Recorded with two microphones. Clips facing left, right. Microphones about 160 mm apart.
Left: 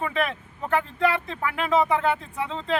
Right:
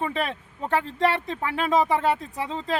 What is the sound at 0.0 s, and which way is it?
Speech, 35° right (ahead or behind).